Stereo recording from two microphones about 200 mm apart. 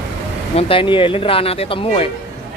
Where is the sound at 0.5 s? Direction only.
25° left (ahead or behind).